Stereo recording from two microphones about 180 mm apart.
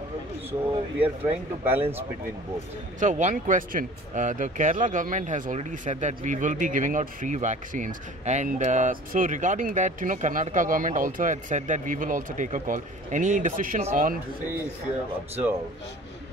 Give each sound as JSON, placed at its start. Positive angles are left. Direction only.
{"t": 0.5, "sound": "speech", "side_deg": -10}
{"t": 3.0, "sound": "speech", "side_deg": -45}